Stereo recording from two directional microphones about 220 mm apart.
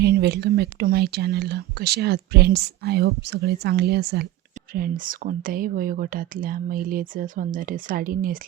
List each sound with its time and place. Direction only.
0.0 s speech: 45° right (ahead or behind)